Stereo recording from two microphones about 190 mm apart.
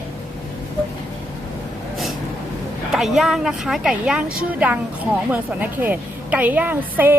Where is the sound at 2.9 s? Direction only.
Centre (ahead or behind).